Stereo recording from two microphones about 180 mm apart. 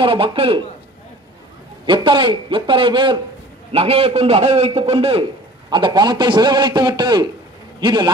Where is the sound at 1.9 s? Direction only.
25° right (ahead or behind).